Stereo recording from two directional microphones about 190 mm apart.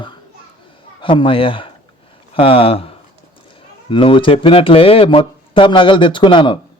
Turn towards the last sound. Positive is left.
turn(degrees=25)  # may be behind; listen again after turning